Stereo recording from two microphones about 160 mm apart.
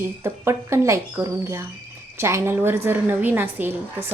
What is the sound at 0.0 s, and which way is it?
Speech, 15° right (ahead or behind).